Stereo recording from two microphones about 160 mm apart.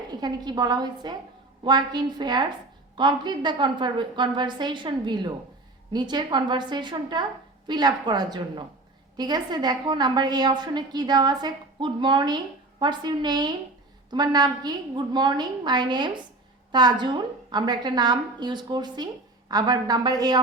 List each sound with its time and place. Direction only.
0.1 s a woman's voice: 25° right (ahead or behind)